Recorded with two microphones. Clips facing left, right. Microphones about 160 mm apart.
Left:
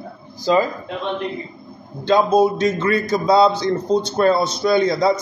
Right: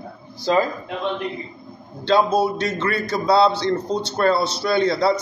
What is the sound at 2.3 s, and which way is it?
Speech, 20° left (ahead or behind).